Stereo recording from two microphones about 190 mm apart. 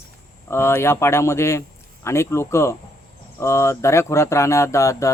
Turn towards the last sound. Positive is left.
turn(degrees=15)  # may be behind; listen again after turning